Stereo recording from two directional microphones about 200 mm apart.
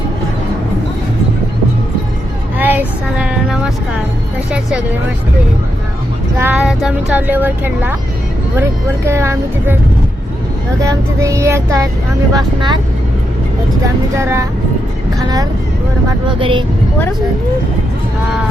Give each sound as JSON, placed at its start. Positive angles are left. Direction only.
{"t": 2.6, "sound": "child singing", "side_deg": -10}
{"t": 6.4, "sound": "speech", "side_deg": -5}
{"t": 9.0, "sound": "child singing", "side_deg": -15}
{"t": 10.8, "sound": "child singing", "side_deg": -15}
{"t": 12.3, "sound": "speech", "side_deg": -20}
{"t": 14.2, "sound": "child singing", "side_deg": -15}
{"t": 16.4, "sound": "speech", "side_deg": -25}